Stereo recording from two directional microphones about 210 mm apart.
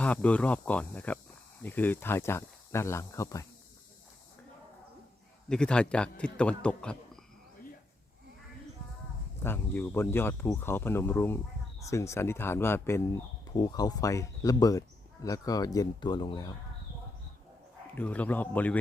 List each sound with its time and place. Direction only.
0.0 s speech: 5° left (ahead or behind)
5.5 s a man's voice: 5° left (ahead or behind)
9.4 s speech: 10° left (ahead or behind)
17.9 s speech: 10° left (ahead or behind)